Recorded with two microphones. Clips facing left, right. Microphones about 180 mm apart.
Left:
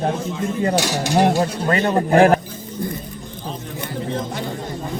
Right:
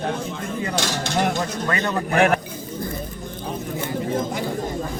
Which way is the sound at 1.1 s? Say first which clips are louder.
Left 7 dB; 35° left (ahead or behind).